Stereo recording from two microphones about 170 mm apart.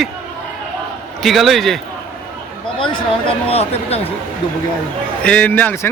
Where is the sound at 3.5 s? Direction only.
35° left (ahead or behind).